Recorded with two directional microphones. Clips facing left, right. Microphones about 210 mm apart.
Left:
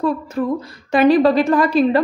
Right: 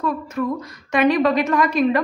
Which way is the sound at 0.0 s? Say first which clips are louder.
Left 3 dB; 30° left (ahead or behind).